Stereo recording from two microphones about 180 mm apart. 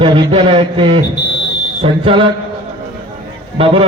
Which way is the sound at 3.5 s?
30° right (ahead or behind).